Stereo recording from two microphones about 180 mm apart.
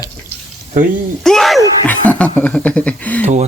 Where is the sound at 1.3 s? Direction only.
Centre (ahead or behind).